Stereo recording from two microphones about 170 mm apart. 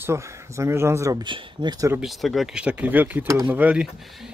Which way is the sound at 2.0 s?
Centre (ahead or behind).